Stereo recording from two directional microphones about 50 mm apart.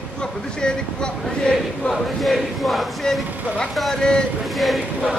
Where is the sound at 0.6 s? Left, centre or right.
Centre.